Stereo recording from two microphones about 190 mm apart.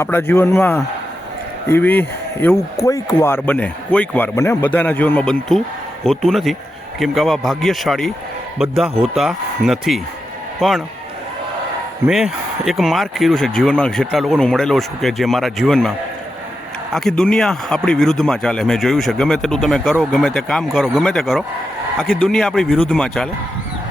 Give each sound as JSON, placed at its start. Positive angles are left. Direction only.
{"t": 0.0, "sound": "speech", "side_deg": 10}
{"t": 12.0, "sound": "speech", "side_deg": -5}
{"t": 16.9, "sound": "speech", "side_deg": 0}